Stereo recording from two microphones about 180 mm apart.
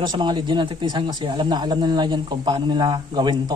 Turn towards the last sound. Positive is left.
turn(degrees=-25)  # may be behind; listen again after turning